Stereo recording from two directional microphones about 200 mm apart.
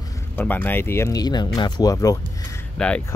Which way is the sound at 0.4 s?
10° left (ahead or behind).